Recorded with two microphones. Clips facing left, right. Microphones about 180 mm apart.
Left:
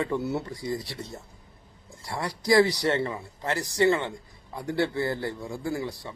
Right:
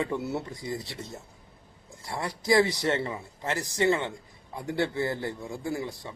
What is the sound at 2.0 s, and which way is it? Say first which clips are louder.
Speech: left 1 dB; 20° right (ahead or behind).